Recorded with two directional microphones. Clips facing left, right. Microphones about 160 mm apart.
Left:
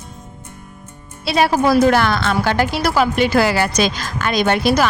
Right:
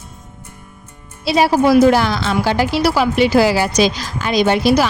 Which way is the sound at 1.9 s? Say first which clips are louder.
Even; 55° left (ahead or behind).